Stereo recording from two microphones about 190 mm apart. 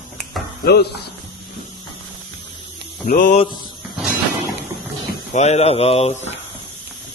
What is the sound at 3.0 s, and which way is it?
Mantra, 45° left (ahead or behind).